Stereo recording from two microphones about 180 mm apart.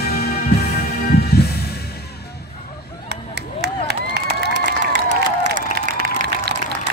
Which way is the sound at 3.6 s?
65° right (ahead or behind).